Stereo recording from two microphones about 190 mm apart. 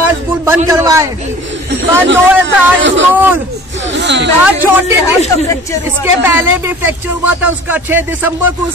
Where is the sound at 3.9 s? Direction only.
70° right (ahead or behind).